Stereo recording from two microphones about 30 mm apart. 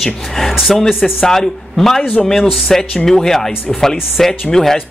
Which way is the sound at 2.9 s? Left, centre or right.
Centre.